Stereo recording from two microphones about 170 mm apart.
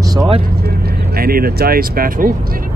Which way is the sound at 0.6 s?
65° right (ahead or behind).